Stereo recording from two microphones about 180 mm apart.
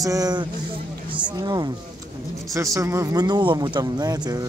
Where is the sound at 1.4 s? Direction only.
20° right (ahead or behind).